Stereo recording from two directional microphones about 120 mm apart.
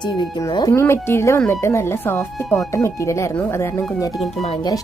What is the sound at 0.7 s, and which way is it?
Speech, 20° left (ahead or behind).